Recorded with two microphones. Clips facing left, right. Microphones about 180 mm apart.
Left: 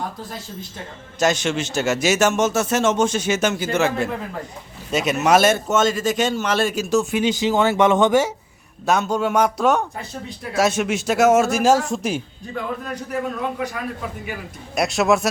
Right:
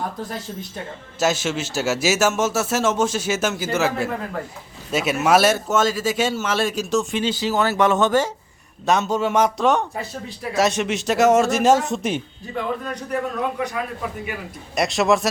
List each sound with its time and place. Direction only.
1.2 s a man's voice: 5° right (ahead or behind)
7.2 s speech: 15° left (ahead or behind)
8.9 s a man's voice: centre (ahead or behind)
14.8 s a man's voice: centre (ahead or behind)